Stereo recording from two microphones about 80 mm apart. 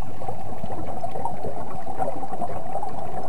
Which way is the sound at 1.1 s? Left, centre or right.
Left.